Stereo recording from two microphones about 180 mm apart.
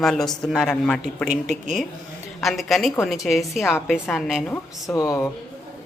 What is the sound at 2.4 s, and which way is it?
A woman's voice, centre (ahead or behind).